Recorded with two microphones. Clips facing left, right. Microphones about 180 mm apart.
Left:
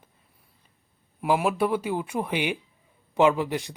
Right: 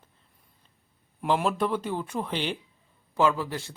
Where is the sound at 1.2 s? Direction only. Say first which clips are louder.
Left 2 dB; 10° left (ahead or behind).